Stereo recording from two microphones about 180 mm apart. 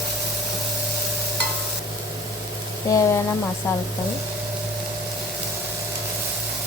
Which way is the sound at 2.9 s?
15° left (ahead or behind).